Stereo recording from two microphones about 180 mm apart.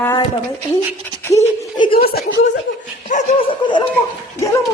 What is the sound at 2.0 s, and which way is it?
Speech, 60° left (ahead or behind).